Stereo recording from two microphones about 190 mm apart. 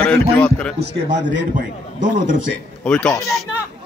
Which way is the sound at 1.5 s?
45° right (ahead or behind).